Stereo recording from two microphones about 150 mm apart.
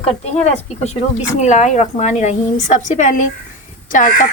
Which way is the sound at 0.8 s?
45° left (ahead or behind).